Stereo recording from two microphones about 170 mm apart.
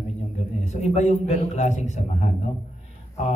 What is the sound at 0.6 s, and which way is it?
A man's voice, 40° left (ahead or behind).